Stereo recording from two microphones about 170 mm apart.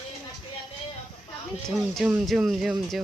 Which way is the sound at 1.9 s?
Centre (ahead or behind).